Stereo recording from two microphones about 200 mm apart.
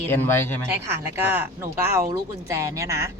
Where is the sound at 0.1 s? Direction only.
10° left (ahead or behind).